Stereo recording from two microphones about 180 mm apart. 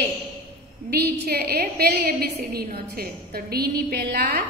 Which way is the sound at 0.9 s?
60° right (ahead or behind).